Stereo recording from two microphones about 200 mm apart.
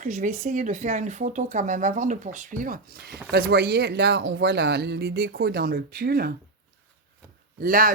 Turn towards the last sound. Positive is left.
turn(degrees=-45)  # may be behind; listen again after turning